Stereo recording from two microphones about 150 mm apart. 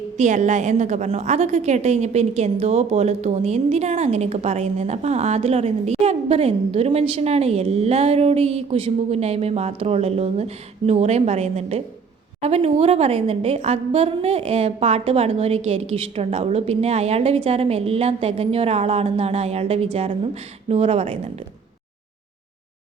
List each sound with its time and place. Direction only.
0.2 s a woman's voice: 55° right (ahead or behind)